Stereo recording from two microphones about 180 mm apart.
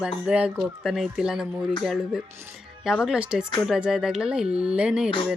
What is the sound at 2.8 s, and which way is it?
Speech, centre (ahead or behind).